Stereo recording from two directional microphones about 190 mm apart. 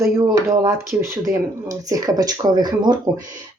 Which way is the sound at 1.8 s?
20° right (ahead or behind).